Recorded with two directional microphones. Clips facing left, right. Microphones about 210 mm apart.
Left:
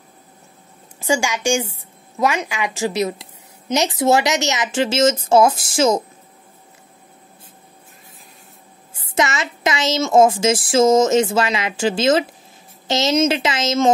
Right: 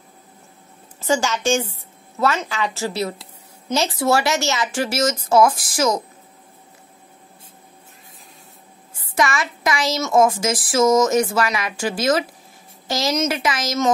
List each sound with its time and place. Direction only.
1.0 s a woman's voice: 10° left (ahead or behind)
9.0 s a woman's voice: 25° left (ahead or behind)